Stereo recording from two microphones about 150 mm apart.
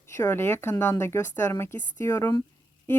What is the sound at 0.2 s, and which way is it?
Speech, 15° left (ahead or behind).